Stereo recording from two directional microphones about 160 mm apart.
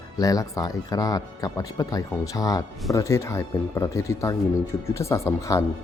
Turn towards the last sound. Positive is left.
turn(degrees=20)  # may be behind; listen again after turning